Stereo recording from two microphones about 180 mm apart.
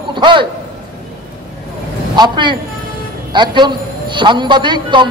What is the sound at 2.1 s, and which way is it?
A man's voice, 25° right (ahead or behind).